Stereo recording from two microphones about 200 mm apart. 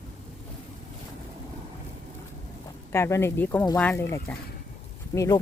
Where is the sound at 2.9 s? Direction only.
15° left (ahead or behind).